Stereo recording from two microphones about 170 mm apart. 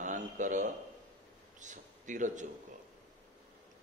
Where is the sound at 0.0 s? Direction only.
45° right (ahead or behind).